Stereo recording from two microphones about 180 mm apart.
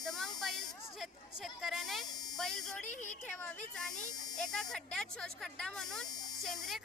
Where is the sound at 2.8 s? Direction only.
45° left (ahead or behind).